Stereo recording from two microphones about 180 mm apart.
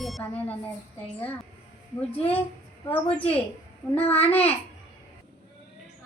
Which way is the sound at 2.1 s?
35° left (ahead or behind).